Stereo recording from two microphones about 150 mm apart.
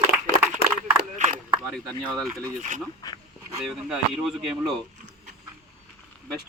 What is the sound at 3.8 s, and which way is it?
Speech, 5° right (ahead or behind).